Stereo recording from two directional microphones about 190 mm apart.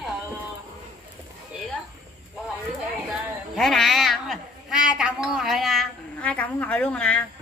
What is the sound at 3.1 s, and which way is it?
Speech, centre (ahead or behind).